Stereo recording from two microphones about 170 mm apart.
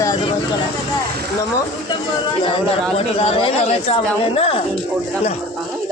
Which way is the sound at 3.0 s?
35° left (ahead or behind).